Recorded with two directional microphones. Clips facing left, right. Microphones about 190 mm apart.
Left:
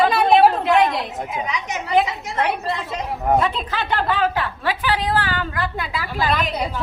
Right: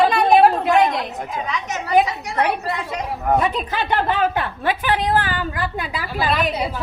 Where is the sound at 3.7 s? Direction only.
15° right (ahead or behind).